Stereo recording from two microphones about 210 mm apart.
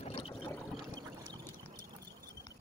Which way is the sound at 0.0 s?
30° left (ahead or behind).